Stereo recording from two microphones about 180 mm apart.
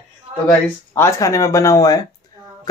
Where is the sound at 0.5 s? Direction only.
15° left (ahead or behind).